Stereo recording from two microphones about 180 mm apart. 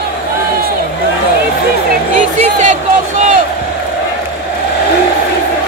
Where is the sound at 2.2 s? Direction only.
40° right (ahead or behind).